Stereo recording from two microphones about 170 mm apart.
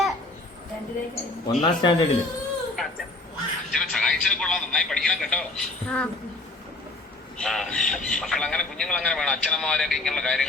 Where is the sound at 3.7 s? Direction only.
5° left (ahead or behind).